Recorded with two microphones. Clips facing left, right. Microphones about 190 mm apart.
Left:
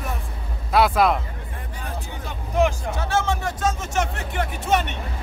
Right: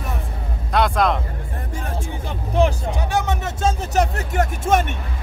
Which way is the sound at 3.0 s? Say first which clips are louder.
Even; 15° right (ahead or behind).